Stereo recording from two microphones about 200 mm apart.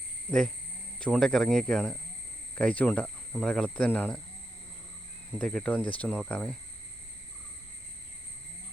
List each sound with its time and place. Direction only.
0.3 s speech: 5° left (ahead or behind)
5.4 s speech: 5° left (ahead or behind)